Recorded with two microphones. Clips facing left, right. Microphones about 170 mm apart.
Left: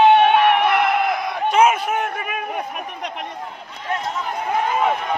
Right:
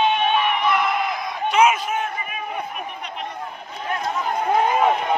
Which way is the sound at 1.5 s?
50° left (ahead or behind).